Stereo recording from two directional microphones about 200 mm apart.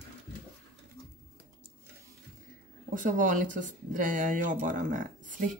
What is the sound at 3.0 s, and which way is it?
Speech, 40° right (ahead or behind).